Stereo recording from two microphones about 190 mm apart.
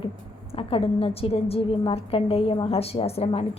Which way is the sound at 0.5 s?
30° left (ahead or behind).